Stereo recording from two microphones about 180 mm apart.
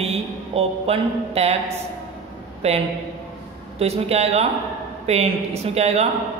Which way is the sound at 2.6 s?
35° right (ahead or behind).